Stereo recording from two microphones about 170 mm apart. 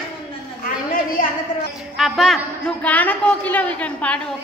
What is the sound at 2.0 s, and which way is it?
A man's voice, centre (ahead or behind).